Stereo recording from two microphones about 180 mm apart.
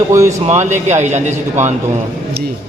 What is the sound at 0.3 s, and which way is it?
A man's voice, 40° right (ahead or behind).